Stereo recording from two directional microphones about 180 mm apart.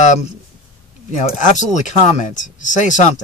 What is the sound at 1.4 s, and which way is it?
Speech, 45° left (ahead or behind).